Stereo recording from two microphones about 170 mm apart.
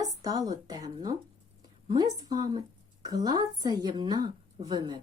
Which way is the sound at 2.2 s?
20° right (ahead or behind).